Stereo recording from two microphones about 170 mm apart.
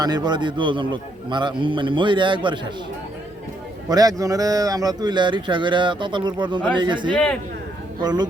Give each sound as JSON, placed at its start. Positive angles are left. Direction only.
{"t": 0.0, "sound": "a man's voice", "side_deg": -25}
{"t": 3.8, "sound": "a man's voice", "side_deg": -20}